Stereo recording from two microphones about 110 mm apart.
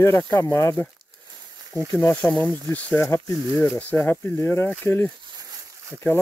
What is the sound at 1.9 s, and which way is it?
Speech, 15° left (ahead or behind).